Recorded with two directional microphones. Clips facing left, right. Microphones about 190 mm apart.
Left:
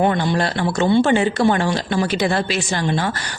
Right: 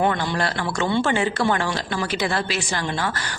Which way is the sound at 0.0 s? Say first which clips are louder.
Left 4 dB; 20° left (ahead or behind).